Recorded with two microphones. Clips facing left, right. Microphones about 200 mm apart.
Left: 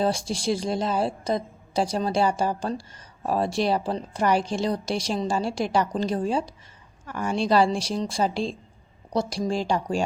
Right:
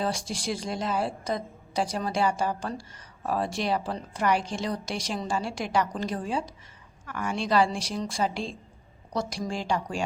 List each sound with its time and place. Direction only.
0.0 s a woman's voice: 30° left (ahead or behind)